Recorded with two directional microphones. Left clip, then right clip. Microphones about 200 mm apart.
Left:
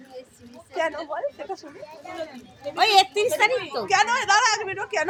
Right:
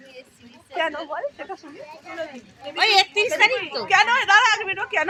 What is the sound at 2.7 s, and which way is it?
A woman's voice, 50° left (ahead or behind).